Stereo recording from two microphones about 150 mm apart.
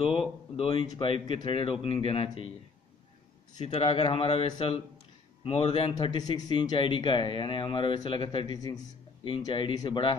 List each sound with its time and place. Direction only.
0.0 s speech: 40° left (ahead or behind)
3.6 s speech: 40° left (ahead or behind)